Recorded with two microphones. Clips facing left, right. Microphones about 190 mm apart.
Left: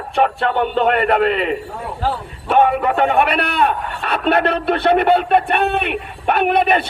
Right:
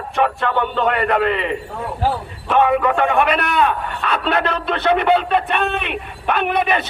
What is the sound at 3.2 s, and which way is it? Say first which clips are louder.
Speech: even; 60° left (ahead or behind).